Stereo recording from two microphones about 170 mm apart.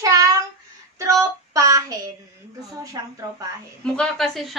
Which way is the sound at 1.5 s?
20° right (ahead or behind).